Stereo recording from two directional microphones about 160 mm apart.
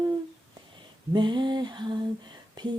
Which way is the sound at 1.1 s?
30° right (ahead or behind).